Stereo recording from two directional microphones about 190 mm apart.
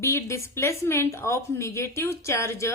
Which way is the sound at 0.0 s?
15° left (ahead or behind).